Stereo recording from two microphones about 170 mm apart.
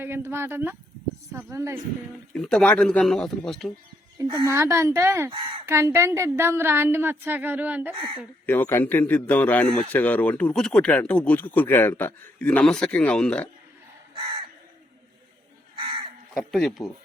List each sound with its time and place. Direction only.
0.0 s a woman's voice: 15° right (ahead or behind)
2.3 s a man's voice: 5° left (ahead or behind)
4.2 s a child's voice: 20° right (ahead or behind)
7.9 s speech: 30° right (ahead or behind)
8.4 s speech: 15° left (ahead or behind)
15.7 s crow: 30° right (ahead or behind)
16.5 s a man's voice: centre (ahead or behind)